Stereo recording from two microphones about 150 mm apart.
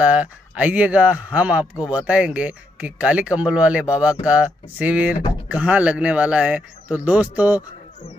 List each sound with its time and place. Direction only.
0.0 s speech: 10° right (ahead or behind)